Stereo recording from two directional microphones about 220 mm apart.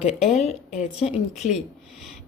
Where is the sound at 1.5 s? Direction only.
Centre (ahead or behind).